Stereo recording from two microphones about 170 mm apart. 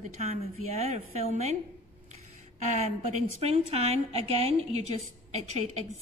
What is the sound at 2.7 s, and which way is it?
A woman's voice, 40° right (ahead or behind).